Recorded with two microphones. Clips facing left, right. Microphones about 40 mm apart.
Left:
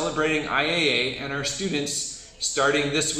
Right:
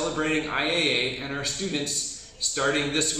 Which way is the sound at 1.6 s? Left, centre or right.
Left.